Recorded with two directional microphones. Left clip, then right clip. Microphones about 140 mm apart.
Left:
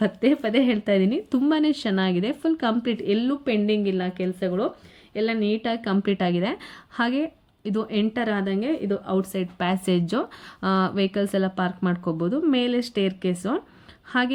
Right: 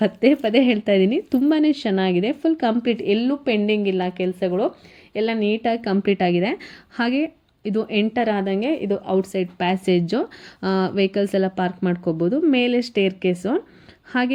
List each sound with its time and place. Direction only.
0.0 s a woman's voice: 15° right (ahead or behind)
9.0 s a woman's voice: 5° right (ahead or behind)